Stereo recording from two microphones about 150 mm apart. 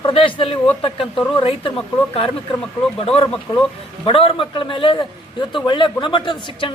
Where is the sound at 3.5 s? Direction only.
25° left (ahead or behind).